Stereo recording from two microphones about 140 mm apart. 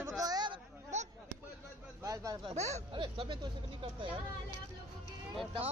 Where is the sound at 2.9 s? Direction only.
35° right (ahead or behind).